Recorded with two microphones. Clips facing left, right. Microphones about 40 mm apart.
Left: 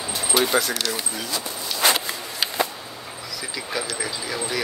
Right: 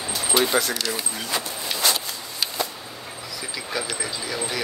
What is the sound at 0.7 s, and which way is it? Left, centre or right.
Speech, left.